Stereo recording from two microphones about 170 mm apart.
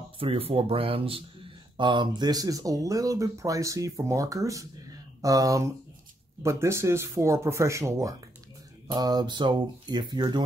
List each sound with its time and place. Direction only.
0.2 s speech: 35° right (ahead or behind)